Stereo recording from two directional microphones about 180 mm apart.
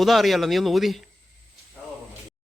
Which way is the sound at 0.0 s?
Centre (ahead or behind).